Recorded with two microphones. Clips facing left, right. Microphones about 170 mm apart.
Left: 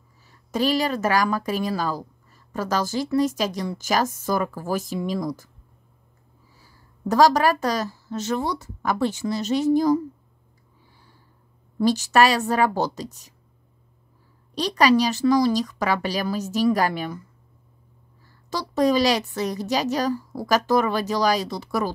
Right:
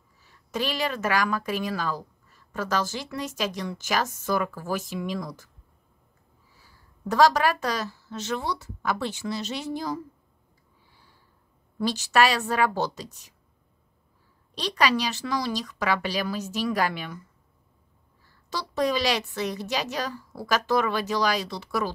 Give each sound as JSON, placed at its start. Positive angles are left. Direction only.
{"t": 0.5, "sound": "speech", "side_deg": 40}
{"t": 6.6, "sound": "a woman's voice", "side_deg": 40}
{"t": 11.8, "sound": "a woman's voice", "side_deg": 45}
{"t": 14.5, "sound": "speech", "side_deg": 40}
{"t": 18.5, "sound": "speech", "side_deg": 40}